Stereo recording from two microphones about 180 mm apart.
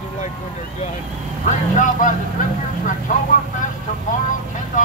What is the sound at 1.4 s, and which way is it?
Speech, 45° left (ahead or behind).